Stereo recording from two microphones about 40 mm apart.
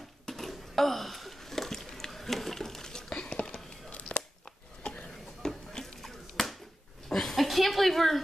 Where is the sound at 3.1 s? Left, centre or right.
Left.